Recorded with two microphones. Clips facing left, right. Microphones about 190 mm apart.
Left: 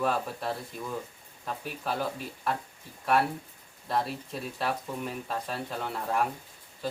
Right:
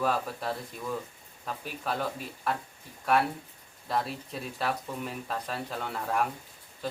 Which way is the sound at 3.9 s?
Centre (ahead or behind).